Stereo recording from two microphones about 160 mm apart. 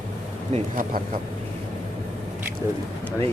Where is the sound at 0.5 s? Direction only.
55° right (ahead or behind).